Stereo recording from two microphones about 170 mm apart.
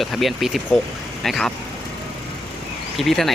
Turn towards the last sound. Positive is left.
turn(degrees=0)  # may be behind; listen again after turning